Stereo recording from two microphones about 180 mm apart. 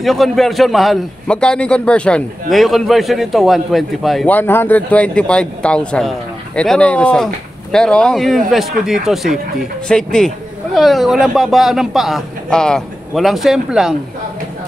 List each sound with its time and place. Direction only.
0.0 s a man's voice: centre (ahead or behind)